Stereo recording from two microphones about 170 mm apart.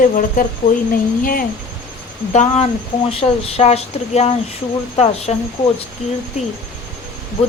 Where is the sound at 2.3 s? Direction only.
40° left (ahead or behind).